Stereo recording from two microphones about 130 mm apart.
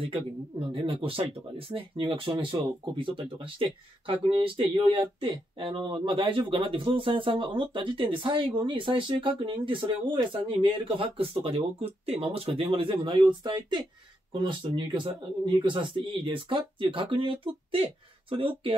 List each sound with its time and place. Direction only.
0.1 s speech: 40° right (ahead or behind)